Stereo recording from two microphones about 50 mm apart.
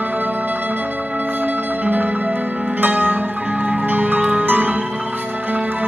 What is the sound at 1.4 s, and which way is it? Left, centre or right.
Music, right.